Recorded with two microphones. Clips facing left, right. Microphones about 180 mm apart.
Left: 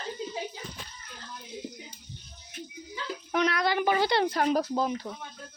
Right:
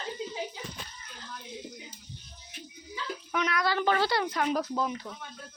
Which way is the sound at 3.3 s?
35° left (ahead or behind).